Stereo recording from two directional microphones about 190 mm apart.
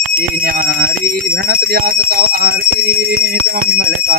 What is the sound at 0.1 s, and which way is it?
Speech, 50° right (ahead or behind).